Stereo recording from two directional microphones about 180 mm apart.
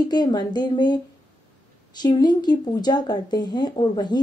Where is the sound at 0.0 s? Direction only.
25° left (ahead or behind).